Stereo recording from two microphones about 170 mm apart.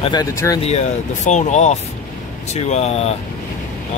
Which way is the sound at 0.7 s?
40° left (ahead or behind).